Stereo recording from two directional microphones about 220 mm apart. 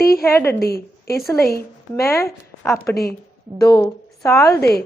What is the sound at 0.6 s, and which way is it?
Speech, 45° left (ahead or behind).